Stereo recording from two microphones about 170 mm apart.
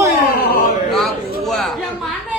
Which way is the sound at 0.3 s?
60° left (ahead or behind).